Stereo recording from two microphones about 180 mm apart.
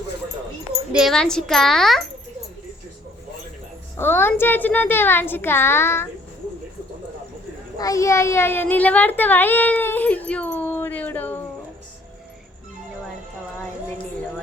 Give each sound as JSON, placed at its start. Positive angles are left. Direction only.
{"t": 0.9, "sound": "a child's voice", "side_deg": 0}
{"t": 3.9, "sound": "speech", "side_deg": 10}
{"t": 7.8, "sound": "speech", "side_deg": 20}